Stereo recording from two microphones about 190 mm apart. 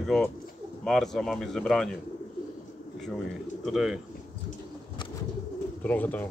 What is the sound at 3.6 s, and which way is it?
Speech, centre (ahead or behind).